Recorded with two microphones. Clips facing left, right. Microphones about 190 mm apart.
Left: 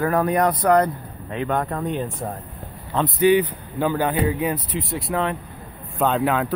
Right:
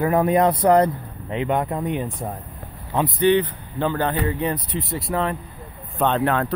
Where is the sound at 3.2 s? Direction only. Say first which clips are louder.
Left 2 dB; 10° left (ahead or behind).